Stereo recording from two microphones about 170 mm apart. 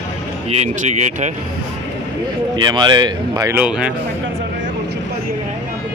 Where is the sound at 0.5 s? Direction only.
40° right (ahead or behind).